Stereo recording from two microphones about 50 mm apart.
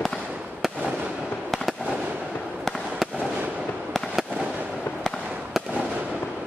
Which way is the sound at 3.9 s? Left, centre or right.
Centre.